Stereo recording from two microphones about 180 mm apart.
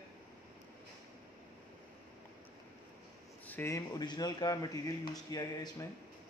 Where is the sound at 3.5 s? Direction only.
15° left (ahead or behind).